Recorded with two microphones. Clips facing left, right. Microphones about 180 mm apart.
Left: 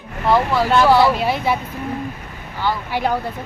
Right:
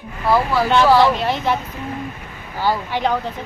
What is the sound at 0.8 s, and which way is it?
Speech, 10° left (ahead or behind).